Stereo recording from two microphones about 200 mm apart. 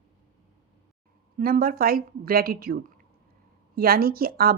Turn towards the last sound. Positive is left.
turn(degrees=-50)  # may be behind; listen again after turning